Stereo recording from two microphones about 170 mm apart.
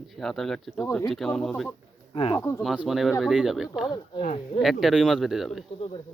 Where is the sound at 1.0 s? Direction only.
Centre (ahead or behind).